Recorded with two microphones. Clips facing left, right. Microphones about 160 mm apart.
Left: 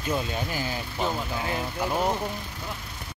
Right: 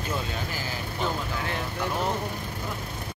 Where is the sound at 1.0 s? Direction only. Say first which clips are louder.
Left 1 dB; 10° left (ahead or behind).